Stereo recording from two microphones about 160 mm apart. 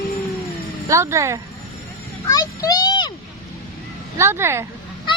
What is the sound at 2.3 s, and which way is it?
Speech, 25° left (ahead or behind).